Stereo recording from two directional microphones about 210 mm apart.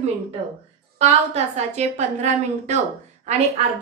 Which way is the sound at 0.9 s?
30° right (ahead or behind).